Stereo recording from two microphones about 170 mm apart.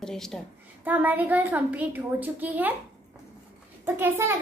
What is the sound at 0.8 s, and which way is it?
A child's voice, 10° right (ahead or behind).